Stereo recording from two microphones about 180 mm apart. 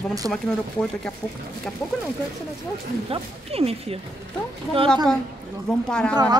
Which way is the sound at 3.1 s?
35° right (ahead or behind).